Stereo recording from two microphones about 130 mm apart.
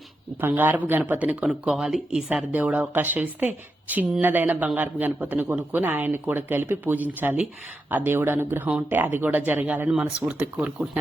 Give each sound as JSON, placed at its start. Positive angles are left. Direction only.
{"t": 0.4, "sound": "speech", "side_deg": -15}